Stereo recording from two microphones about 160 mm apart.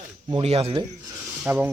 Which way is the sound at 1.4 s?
10° right (ahead or behind).